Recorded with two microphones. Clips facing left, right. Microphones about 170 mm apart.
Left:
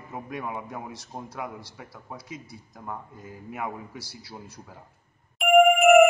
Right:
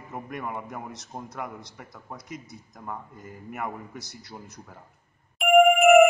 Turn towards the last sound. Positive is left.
turn(degrees=0)  # may be behind; listen again after turning